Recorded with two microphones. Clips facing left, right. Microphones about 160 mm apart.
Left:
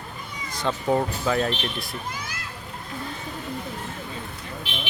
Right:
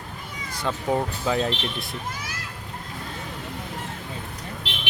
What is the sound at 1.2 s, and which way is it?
Speech, 20° right (ahead or behind).